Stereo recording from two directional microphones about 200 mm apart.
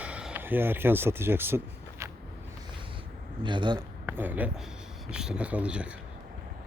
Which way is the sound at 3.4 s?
25° right (ahead or behind).